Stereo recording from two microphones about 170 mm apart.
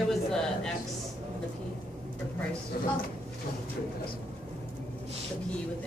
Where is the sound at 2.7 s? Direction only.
65° left (ahead or behind).